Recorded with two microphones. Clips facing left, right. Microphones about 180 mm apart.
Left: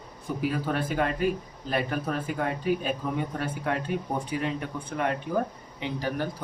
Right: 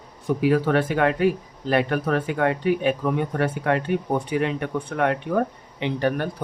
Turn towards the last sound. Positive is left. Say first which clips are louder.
# right 6 dB
turn(degrees=-65)  # may be behind; listen again after turning